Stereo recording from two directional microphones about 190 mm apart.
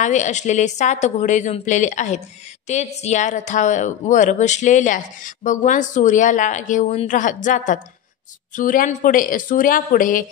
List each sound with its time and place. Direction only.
0.0 s a woman's voice: 40° left (ahead or behind)